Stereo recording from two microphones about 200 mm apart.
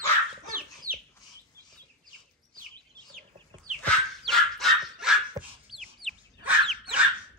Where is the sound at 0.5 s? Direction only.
45° right (ahead or behind).